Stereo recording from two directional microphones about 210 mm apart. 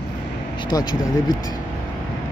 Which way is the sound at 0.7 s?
20° left (ahead or behind).